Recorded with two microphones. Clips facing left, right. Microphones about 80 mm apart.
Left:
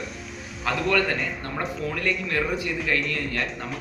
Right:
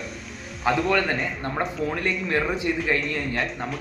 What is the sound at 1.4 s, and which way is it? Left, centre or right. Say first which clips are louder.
Speech: right 3 dB; right.